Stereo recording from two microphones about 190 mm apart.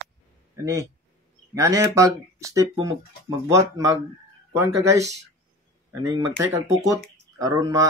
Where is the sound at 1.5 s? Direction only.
15° right (ahead or behind).